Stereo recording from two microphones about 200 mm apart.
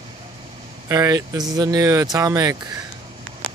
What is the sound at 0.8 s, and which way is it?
Speech, 15° right (ahead or behind).